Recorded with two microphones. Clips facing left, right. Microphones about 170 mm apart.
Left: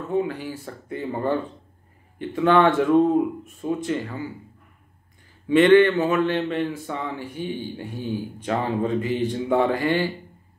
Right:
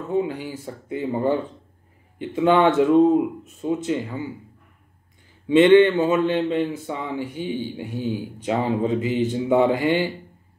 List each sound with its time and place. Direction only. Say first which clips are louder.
0.1 s a man's voice: right 1 dB; 20° right (ahead or behind)
5.5 s a man's voice: right 1 dB; 20° right (ahead or behind)